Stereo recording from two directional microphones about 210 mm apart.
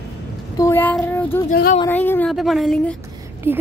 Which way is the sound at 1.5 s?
45° left (ahead or behind).